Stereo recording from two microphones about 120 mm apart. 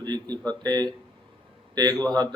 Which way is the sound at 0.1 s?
35° right (ahead or behind).